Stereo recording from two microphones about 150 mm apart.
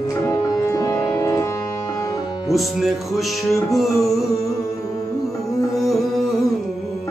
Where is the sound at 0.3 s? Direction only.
20° left (ahead or behind).